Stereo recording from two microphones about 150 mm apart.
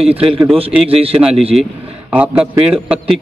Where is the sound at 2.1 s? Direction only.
10° right (ahead or behind).